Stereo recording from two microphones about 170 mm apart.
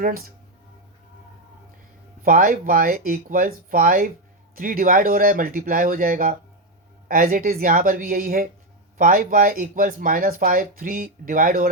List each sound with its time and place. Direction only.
2.2 s speech: 55° right (ahead or behind)